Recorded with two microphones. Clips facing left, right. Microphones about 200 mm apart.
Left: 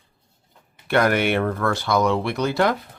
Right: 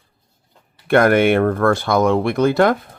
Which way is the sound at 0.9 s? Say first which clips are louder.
Right 6 dB; 50° right (ahead or behind).